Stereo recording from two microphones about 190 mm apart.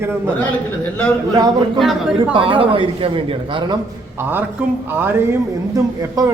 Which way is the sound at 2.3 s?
25° right (ahead or behind).